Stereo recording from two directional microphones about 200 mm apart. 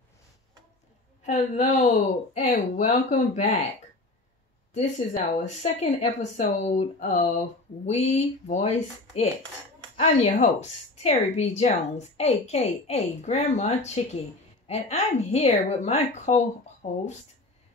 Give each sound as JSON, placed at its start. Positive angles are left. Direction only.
{"t": 1.2, "sound": "speech", "side_deg": 35}
{"t": 4.7, "sound": "speech", "side_deg": 35}